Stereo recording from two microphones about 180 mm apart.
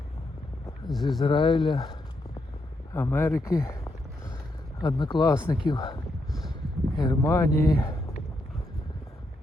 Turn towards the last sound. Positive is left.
turn(degrees=20)  # may be behind; listen again after turning